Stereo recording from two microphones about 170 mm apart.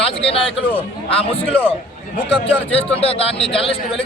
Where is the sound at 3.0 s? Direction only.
35° left (ahead or behind).